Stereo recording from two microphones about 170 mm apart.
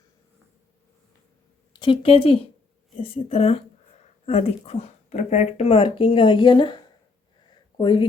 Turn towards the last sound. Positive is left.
turn(degrees=30)  # may be behind; listen again after turning